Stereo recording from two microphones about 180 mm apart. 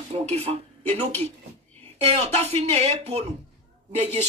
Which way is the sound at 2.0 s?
35° right (ahead or behind).